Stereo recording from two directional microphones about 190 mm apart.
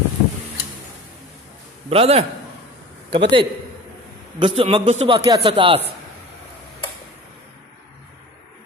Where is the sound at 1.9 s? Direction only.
30° right (ahead or behind).